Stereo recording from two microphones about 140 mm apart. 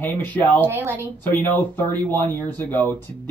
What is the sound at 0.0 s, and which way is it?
Speech, 15° left (ahead or behind).